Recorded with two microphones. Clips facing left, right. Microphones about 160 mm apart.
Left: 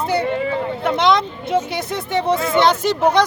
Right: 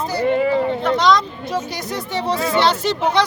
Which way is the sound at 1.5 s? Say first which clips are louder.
Left 4 dB; 55° left (ahead or behind).